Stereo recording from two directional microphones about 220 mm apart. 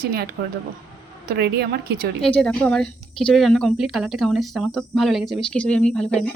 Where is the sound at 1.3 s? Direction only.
45° right (ahead or behind).